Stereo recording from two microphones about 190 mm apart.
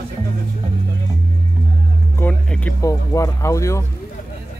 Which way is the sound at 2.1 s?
10° left (ahead or behind).